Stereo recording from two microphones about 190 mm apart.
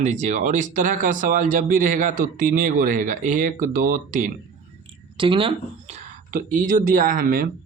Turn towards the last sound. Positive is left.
turn(degrees=-50)  # may be behind; listen again after turning